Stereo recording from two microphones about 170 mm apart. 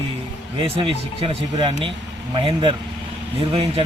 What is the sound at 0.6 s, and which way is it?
A man's voice, 30° right (ahead or behind).